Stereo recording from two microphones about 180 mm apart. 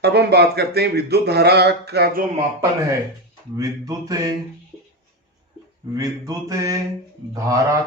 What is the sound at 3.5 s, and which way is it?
Mantra, 20° right (ahead or behind).